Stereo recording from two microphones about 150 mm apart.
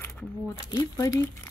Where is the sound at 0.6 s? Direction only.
30° left (ahead or behind).